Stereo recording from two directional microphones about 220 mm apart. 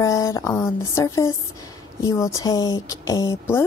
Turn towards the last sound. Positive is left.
turn(degrees=10)  # may be behind; listen again after turning